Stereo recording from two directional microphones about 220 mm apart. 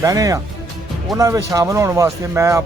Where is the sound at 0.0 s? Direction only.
15° right (ahead or behind).